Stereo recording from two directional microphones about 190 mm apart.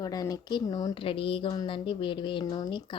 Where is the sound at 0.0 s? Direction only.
20° left (ahead or behind).